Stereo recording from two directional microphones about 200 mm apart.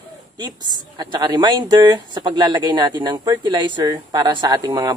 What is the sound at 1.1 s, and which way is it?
Speech, 20° right (ahead or behind).